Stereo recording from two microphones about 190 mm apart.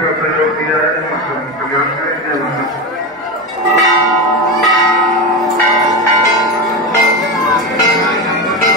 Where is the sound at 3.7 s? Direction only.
20° right (ahead or behind).